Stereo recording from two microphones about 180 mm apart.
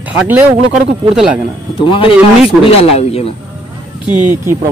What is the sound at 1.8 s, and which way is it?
A man's voice, 30° left (ahead or behind).